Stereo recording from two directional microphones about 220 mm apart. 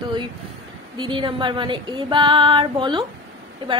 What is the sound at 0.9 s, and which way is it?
Female singing, 20° right (ahead or behind).